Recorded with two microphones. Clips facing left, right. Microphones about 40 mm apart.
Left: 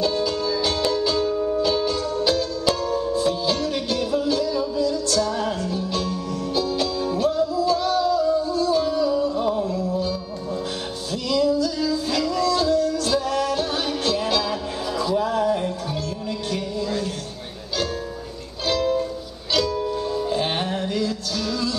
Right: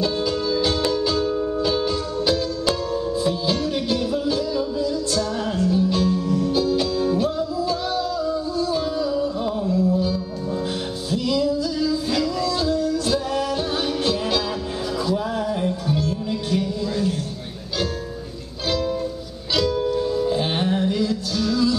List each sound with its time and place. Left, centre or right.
0.0 s music: centre
4.7 s music: right
5.2 s music: centre
8.1 s a sound: centre
8.6 s music: centre
15.0 s a sound: centre
15.4 s music: centre
16.5 s a sound: centre
18.8 s music: centre
19.5 s music: centre
20.1 s music: centre
20.8 s music: centre
21.4 s music: centre